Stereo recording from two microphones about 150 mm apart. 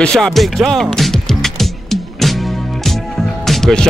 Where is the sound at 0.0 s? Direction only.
5° left (ahead or behind).